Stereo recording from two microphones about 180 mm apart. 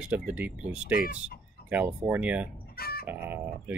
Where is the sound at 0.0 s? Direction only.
5° right (ahead or behind).